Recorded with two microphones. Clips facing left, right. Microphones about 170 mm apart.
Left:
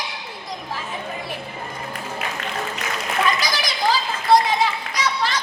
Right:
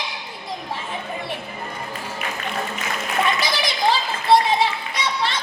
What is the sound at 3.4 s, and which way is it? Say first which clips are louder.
Children playing: right 1 dB; 25° right (ahead or behind).